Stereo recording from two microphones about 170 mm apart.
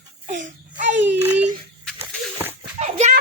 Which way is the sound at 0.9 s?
90° right.